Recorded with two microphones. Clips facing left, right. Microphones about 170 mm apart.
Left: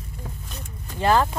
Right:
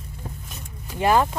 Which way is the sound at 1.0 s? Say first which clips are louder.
Right 1 dB; 15° right (ahead or behind).